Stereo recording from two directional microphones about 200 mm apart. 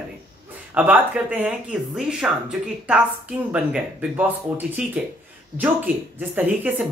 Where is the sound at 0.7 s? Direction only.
10° right (ahead or behind).